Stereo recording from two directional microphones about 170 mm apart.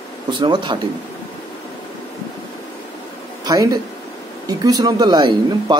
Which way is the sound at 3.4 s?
25° right (ahead or behind).